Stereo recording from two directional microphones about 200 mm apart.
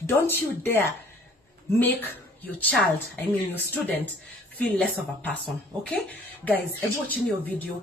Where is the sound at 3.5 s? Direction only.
10° left (ahead or behind).